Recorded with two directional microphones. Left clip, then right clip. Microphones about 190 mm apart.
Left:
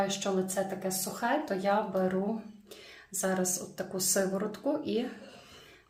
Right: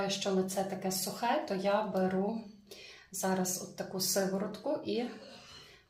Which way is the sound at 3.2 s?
30° left (ahead or behind).